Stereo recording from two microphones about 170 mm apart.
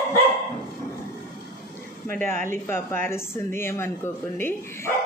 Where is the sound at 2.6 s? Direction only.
15° left (ahead or behind).